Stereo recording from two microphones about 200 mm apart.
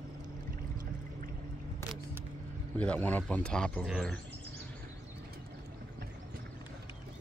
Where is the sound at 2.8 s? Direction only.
10° left (ahead or behind).